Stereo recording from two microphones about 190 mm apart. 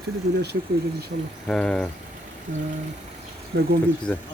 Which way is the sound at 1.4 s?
5° left (ahead or behind).